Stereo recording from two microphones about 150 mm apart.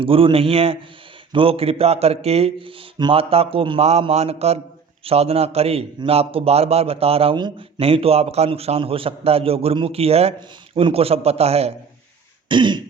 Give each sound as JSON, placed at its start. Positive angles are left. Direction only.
{"t": 0.0, "sound": "a man's voice", "side_deg": -35}
{"t": 12.5, "sound": "a man's voice", "side_deg": -30}